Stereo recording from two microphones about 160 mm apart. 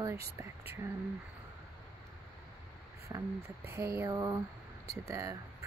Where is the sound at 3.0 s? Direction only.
20° right (ahead or behind).